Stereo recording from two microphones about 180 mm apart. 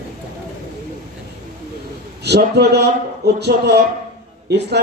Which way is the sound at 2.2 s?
65° right (ahead or behind).